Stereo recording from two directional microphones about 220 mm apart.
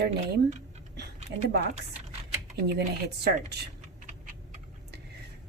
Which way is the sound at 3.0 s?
50° right (ahead or behind).